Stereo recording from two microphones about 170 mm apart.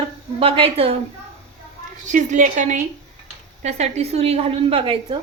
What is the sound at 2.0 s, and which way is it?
A woman's voice, 50° right (ahead or behind).